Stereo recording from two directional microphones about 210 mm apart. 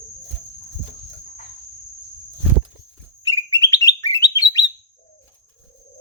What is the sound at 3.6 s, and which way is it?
Bird, 15° left (ahead or behind).